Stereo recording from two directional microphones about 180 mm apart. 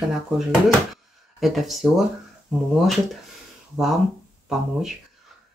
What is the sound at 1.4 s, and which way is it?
Speech, centre (ahead or behind).